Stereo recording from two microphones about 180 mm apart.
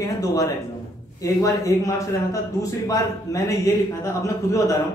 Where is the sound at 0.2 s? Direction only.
20° left (ahead or behind).